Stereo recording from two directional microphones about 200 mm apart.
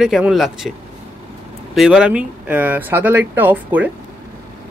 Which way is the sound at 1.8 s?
5° right (ahead or behind).